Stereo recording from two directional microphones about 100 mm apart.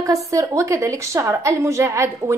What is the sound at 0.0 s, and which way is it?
A woman's voice, 35° right (ahead or behind).